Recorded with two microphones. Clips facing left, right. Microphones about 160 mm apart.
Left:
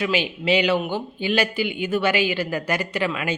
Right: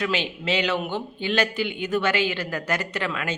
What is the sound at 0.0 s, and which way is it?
A man's voice, 10° left (ahead or behind).